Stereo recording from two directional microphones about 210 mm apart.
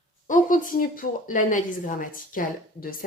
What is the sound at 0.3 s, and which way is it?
Speech, 40° left (ahead or behind).